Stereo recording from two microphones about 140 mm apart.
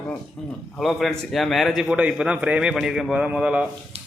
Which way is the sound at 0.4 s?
5° left (ahead or behind).